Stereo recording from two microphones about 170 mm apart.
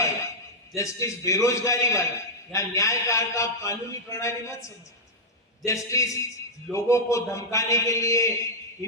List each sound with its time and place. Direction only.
0.8 s a man's voice: 20° left (ahead or behind)
5.6 s a man's voice: 20° left (ahead or behind)